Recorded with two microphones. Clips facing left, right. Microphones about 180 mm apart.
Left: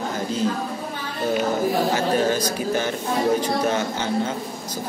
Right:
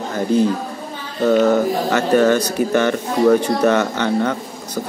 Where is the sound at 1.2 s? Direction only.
70° right (ahead or behind).